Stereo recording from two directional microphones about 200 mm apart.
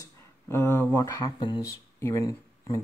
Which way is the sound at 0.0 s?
15° left (ahead or behind).